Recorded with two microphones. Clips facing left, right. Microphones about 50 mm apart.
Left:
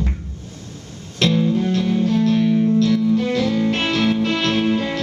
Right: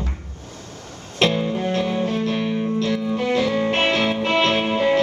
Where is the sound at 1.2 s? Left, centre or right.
Right.